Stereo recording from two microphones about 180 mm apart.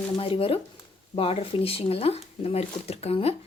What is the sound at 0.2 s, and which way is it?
Speech, 30° left (ahead or behind).